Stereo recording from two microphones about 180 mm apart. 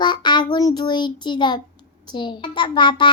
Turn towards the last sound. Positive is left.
turn(degrees=25)  # may be behind; listen again after turning